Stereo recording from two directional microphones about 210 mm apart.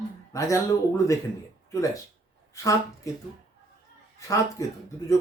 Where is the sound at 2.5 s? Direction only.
15° left (ahead or behind).